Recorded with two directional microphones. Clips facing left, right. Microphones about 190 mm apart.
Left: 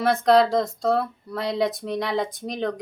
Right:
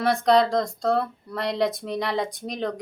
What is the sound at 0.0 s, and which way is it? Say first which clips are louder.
Speech: left 2 dB; centre (ahead or behind).